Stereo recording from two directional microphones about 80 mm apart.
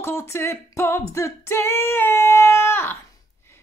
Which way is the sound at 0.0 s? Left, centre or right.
Left.